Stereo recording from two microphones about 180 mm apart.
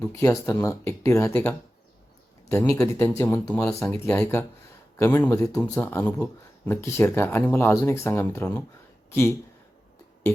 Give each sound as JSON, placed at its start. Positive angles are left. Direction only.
{"t": 0.0, "sound": "speech", "side_deg": 15}
{"t": 5.5, "sound": "speech", "side_deg": 5}